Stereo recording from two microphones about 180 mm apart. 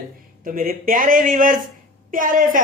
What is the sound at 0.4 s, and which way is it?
A woman's voice, 50° right (ahead or behind).